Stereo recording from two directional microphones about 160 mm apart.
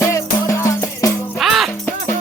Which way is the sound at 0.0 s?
15° left (ahead or behind).